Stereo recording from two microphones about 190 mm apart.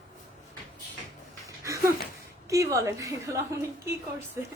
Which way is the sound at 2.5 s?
15° right (ahead or behind).